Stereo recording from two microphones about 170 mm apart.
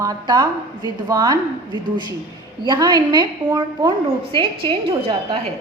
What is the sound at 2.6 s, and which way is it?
A woman's voice, 25° right (ahead or behind).